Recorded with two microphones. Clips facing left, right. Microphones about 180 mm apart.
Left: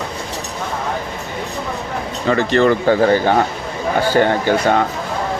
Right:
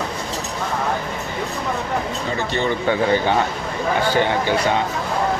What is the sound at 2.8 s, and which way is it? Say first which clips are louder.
Speech: left 5 dB; 40° left (ahead or behind).